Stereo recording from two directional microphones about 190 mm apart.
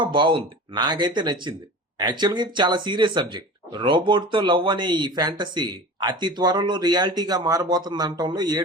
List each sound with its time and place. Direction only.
0.0 s speech: 25° right (ahead or behind)